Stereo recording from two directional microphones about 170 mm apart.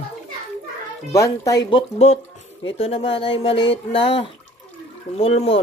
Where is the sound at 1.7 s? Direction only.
35° left (ahead or behind).